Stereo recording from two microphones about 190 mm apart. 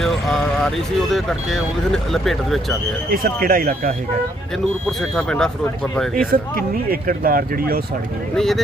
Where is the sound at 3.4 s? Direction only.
50° right (ahead or behind).